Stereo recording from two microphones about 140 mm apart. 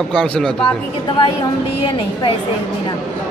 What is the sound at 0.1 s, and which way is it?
Speech, 5° left (ahead or behind).